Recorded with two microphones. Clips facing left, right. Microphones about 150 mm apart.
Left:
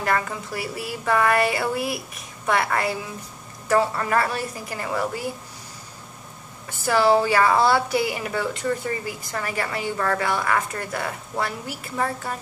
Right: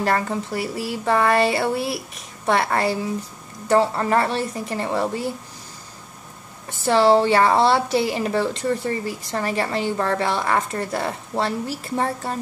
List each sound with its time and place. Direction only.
0.0 s a woman's voice: 30° right (ahead or behind)
6.9 s a woman's voice: 30° right (ahead or behind)